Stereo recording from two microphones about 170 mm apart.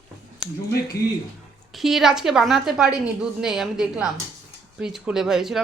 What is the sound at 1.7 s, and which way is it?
Speech, centre (ahead or behind).